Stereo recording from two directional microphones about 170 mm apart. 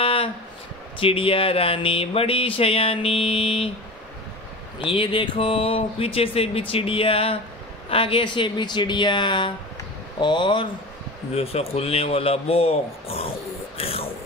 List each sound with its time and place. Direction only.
0.0 s a sound: 30° left (ahead or behind)
0.9 s speech: 30° left (ahead or behind)
4.7 s speech: 30° left (ahead or behind)